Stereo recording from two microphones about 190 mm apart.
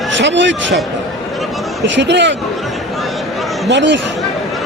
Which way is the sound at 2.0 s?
70° right (ahead or behind).